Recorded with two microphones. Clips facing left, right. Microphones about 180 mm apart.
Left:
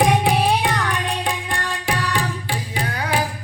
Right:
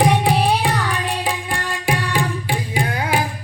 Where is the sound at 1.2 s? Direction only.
5° right (ahead or behind).